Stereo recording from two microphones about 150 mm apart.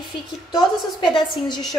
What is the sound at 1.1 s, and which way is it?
Speech, 30° left (ahead or behind).